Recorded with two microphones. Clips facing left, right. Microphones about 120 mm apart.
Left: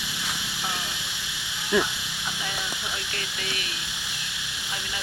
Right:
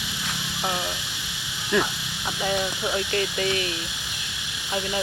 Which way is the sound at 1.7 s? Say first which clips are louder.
Even; 10° left (ahead or behind).